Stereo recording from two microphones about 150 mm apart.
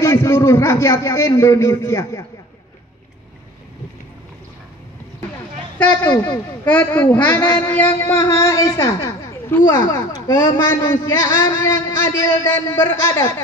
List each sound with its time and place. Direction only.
0.0 s a man's voice: 20° left (ahead or behind)
5.8 s a man's voice: 10° left (ahead or behind)